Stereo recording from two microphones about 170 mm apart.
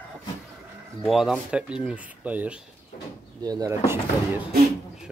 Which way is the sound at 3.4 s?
20° right (ahead or behind).